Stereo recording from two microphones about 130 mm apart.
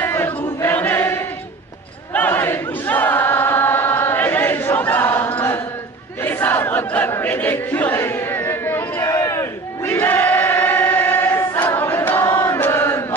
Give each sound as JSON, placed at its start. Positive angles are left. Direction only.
{"t": 0.0, "sound": "chant", "side_deg": 20}
{"t": 2.1, "sound": "choir", "side_deg": 15}
{"t": 6.2, "sound": "a sound", "side_deg": 15}
{"t": 9.1, "sound": "crowd", "side_deg": 25}
{"t": 12.4, "sound": "chant", "side_deg": 15}